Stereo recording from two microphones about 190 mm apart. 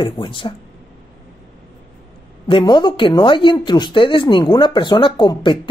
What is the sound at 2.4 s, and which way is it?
Speech, 25° left (ahead or behind).